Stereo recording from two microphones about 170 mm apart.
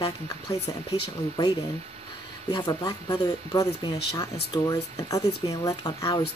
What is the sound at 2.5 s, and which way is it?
Speech, 25° left (ahead or behind).